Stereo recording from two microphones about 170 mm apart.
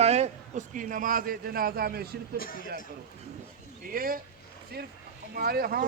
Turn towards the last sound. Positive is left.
turn(degrees=-60)  # may be behind; listen again after turning